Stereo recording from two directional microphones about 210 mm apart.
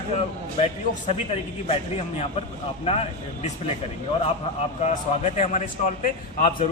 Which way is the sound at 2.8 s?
30° left (ahead or behind).